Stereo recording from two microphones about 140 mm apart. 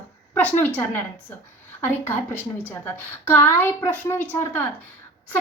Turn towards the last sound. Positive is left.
turn(degrees=15)  # may be behind; listen again after turning